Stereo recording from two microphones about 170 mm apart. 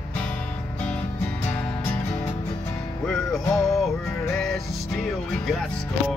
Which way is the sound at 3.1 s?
Centre (ahead or behind).